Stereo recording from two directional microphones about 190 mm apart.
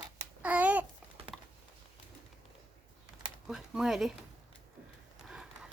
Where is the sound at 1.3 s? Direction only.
Centre (ahead or behind).